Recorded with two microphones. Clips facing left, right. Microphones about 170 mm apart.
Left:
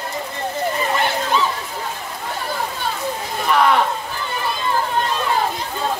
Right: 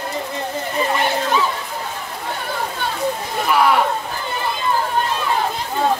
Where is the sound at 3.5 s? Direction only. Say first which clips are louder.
Even; 10° right (ahead or behind).